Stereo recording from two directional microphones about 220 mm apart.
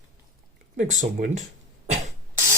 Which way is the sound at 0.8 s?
35° right (ahead or behind).